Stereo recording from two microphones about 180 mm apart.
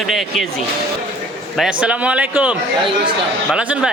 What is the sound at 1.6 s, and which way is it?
Speech, 5° right (ahead or behind).